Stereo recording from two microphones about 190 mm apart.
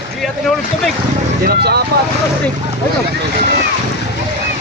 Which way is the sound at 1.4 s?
55° right (ahead or behind).